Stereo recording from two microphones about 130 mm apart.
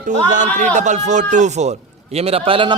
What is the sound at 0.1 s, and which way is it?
Speech, 70° right (ahead or behind).